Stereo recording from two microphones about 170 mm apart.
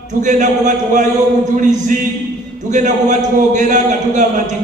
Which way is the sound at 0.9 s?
45° right (ahead or behind).